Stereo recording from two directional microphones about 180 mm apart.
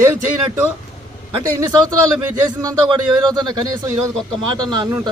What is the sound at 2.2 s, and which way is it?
A man's voice, 20° right (ahead or behind).